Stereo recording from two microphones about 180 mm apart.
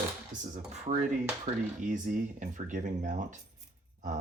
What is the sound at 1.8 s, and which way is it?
Speech, 45° right (ahead or behind).